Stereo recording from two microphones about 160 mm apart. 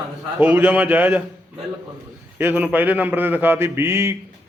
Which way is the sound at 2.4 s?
10° right (ahead or behind).